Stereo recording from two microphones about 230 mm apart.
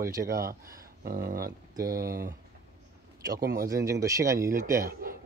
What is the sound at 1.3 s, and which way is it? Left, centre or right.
Speech, right.